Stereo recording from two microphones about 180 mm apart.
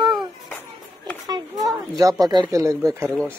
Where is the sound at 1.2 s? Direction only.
20° right (ahead or behind).